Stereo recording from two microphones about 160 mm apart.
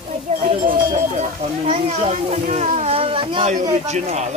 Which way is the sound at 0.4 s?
55° right (ahead or behind).